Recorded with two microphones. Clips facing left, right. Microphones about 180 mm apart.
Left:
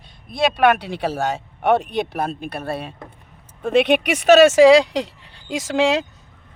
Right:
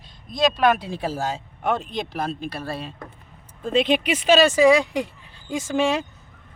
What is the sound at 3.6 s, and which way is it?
Speech, 75° left (ahead or behind).